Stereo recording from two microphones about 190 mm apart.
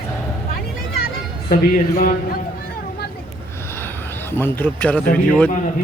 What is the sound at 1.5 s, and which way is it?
Speech, 45° left (ahead or behind).